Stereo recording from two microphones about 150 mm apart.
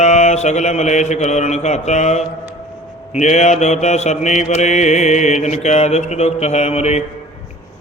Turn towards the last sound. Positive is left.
turn(degrees=45)  # may be behind; listen again after turning